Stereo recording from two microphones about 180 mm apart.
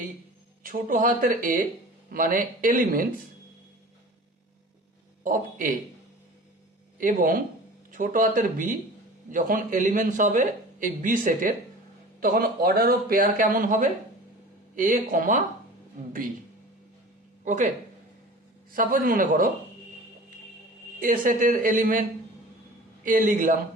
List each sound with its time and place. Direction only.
0.6 s a man's voice: 50° right (ahead or behind)
5.2 s a man's voice: 50° right (ahead or behind)
7.0 s a man's voice: 50° right (ahead or behind)
17.4 s speech: 45° right (ahead or behind)
18.7 s a man's voice: 50° right (ahead or behind)
21.0 s a man's voice: 50° right (ahead or behind)
23.0 s a man's voice: 45° right (ahead or behind)